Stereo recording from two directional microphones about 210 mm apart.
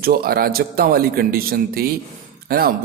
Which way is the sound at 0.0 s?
45° right (ahead or behind).